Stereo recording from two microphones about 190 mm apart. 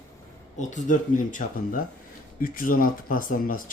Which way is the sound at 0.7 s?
40° left (ahead or behind).